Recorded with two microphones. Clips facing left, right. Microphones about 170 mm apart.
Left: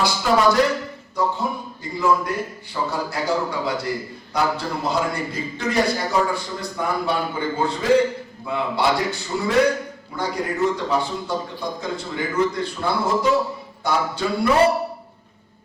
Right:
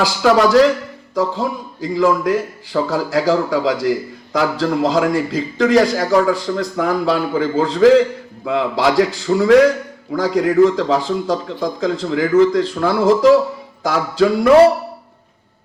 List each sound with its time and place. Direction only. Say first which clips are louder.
0.0 s a man's voice: right 5 dB; 90° right